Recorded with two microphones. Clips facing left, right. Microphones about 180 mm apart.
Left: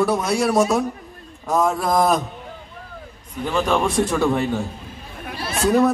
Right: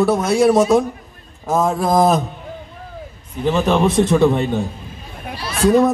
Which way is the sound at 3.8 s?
20° right (ahead or behind).